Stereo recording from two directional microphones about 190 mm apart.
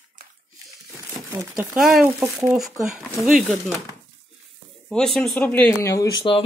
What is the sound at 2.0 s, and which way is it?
Speech, 15° right (ahead or behind).